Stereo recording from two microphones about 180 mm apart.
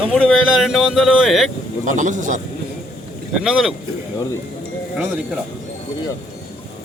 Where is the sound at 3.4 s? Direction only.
5° right (ahead or behind).